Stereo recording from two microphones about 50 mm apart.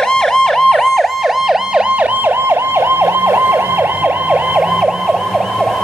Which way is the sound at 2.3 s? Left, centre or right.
Right.